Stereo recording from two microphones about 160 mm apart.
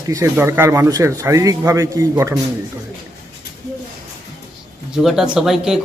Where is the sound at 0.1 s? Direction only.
20° right (ahead or behind).